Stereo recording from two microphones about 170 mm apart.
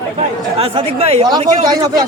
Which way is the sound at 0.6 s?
35° right (ahead or behind).